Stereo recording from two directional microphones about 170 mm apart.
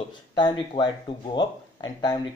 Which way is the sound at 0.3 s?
25° left (ahead or behind).